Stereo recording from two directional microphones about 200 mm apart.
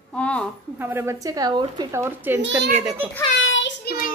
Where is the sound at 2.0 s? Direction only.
10° right (ahead or behind).